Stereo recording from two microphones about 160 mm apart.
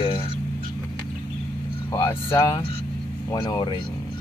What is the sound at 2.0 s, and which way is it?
Speech, 15° left (ahead or behind).